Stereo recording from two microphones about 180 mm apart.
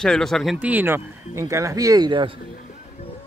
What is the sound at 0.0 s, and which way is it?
Speech, 5° left (ahead or behind).